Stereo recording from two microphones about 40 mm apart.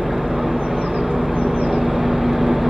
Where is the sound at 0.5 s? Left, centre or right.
Centre.